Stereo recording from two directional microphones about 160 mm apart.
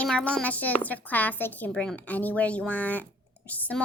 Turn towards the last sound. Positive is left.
turn(degrees=10)  # may be behind; listen again after turning